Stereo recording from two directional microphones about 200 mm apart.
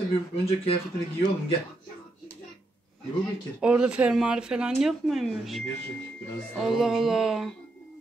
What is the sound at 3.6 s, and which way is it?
Speech, 5° right (ahead or behind).